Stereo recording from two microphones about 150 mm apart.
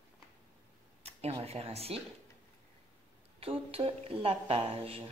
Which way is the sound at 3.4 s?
40° right (ahead or behind).